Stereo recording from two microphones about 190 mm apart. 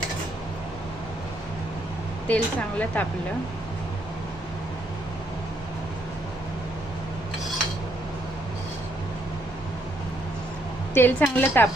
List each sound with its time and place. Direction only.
2.2 s speech: 5° left (ahead or behind)
10.9 s speech: 10° left (ahead or behind)